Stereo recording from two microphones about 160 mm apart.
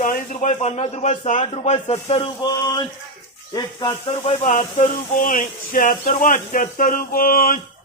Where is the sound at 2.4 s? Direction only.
25° left (ahead or behind).